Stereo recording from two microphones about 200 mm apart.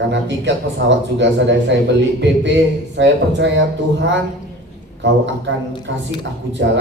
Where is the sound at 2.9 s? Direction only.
60° right (ahead or behind).